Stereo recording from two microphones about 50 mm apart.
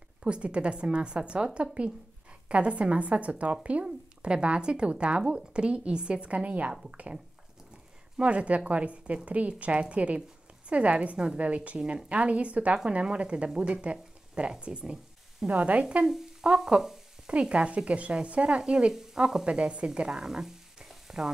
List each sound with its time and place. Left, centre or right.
0.2 s speech: right
6.7 s speech: centre
8.2 s speech: right
15.8 s speech: centre
16.4 s frying: centre
17.3 s speech: right
20.1 s frying: centre